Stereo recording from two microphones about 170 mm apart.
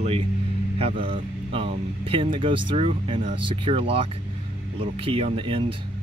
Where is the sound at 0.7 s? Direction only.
35° right (ahead or behind).